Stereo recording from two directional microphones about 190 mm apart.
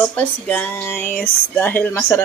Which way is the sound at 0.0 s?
10° left (ahead or behind).